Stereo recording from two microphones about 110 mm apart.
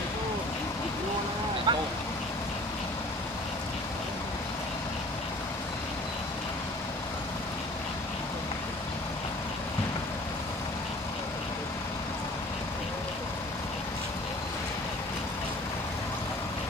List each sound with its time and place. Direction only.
1.7 s vehicle: 45° right (ahead or behind)